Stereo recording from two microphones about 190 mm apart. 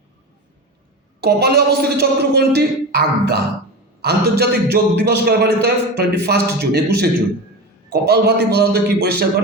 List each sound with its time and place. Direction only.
1.2 s a man's voice: 55° right (ahead or behind)